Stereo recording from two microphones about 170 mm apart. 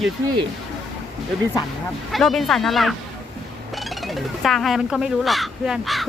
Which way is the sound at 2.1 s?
Centre (ahead or behind).